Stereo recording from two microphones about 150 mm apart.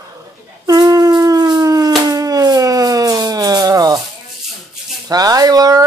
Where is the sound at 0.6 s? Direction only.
25° right (ahead or behind).